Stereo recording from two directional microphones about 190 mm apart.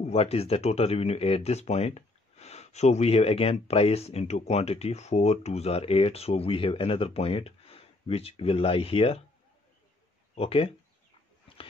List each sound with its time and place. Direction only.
0.0 s speech: 35° left (ahead or behind)
10.3 s speech: 30° left (ahead or behind)